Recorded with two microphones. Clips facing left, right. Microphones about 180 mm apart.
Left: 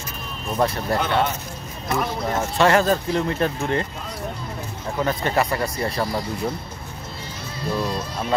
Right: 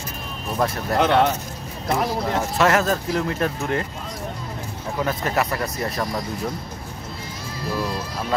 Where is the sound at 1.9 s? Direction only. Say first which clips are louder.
Right 2 dB; 30° right (ahead or behind).